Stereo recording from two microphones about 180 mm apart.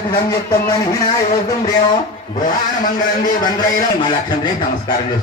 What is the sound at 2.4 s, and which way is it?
A man's voice, 45° left (ahead or behind).